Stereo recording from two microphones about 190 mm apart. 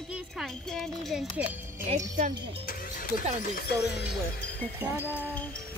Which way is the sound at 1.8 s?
40° right (ahead or behind).